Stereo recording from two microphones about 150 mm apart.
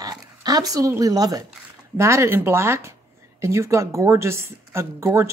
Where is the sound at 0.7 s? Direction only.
25° right (ahead or behind).